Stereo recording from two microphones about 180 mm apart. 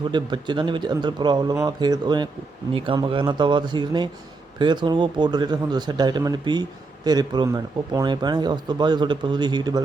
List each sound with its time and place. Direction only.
0.1 s speech: 25° right (ahead or behind)